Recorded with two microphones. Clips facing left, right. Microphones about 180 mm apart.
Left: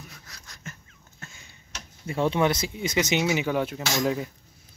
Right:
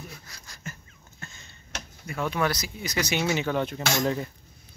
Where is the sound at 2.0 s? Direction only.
30° left (ahead or behind).